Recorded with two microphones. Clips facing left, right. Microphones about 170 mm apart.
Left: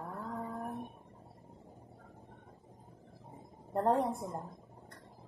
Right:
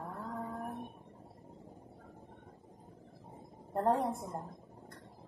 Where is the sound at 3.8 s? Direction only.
Centre (ahead or behind).